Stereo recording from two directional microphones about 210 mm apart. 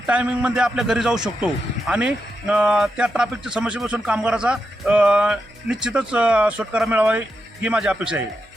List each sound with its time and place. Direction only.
0.1 s speech: 5° right (ahead or behind)